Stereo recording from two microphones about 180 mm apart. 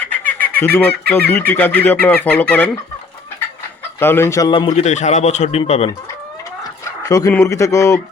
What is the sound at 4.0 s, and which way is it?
A man's voice, 15° left (ahead or behind).